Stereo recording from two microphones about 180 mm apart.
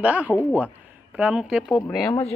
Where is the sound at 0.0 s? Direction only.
10° right (ahead or behind).